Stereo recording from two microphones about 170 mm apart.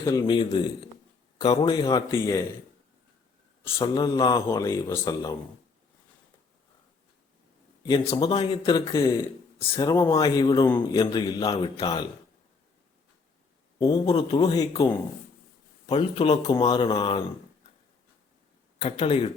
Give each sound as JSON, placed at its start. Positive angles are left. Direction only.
{"t": 0.0, "sound": "speech", "side_deg": 25}
{"t": 3.8, "sound": "speech", "side_deg": 25}
{"t": 7.9, "sound": "speech", "side_deg": 25}
{"t": 13.7, "sound": "a man's voice", "side_deg": 25}
{"t": 14.2, "sound": "speech", "side_deg": 40}
{"t": 14.4, "sound": "speech", "side_deg": 20}
{"t": 15.9, "sound": "speech", "side_deg": 35}
{"t": 18.8, "sound": "speech", "side_deg": 35}